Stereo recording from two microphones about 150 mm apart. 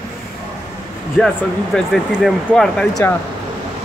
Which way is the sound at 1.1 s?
Centre (ahead or behind).